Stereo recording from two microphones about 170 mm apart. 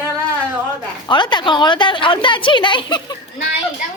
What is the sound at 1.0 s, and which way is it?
A woman's voice, 25° left (ahead or behind).